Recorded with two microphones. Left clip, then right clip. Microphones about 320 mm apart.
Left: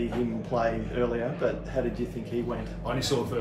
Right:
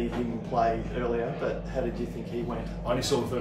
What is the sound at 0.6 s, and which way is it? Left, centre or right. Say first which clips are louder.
Speech: right 2 dB; left.